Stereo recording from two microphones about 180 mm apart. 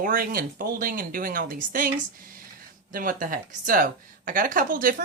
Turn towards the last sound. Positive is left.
turn(degrees=-50)  # may be behind; listen again after turning